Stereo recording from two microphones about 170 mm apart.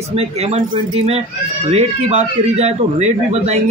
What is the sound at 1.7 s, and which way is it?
Speech, 40° right (ahead or behind).